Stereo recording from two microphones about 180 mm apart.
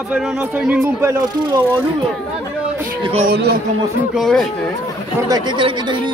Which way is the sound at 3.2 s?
65° right (ahead or behind).